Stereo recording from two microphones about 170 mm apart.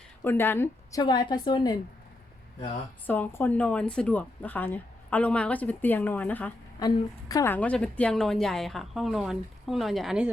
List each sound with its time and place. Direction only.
0.3 s a woman's voice: 15° left (ahead or behind)
3.1 s speech: 10° left (ahead or behind)
6.7 s a woman's voice: 20° left (ahead or behind)
7.5 s speech: 5° left (ahead or behind)